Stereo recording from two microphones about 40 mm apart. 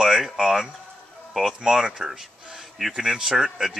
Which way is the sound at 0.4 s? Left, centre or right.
Centre.